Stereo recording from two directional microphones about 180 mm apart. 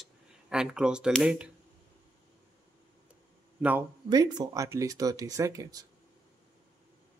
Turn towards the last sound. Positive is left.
turn(degrees=-20)  # may be behind; listen again after turning